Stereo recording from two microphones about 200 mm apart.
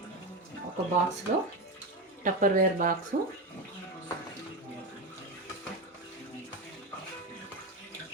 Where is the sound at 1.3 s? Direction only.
40° right (ahead or behind).